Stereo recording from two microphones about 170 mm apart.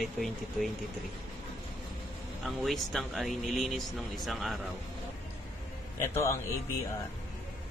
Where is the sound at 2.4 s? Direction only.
Centre (ahead or behind).